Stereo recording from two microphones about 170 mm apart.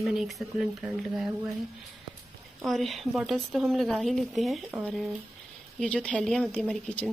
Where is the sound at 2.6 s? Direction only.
Centre (ahead or behind).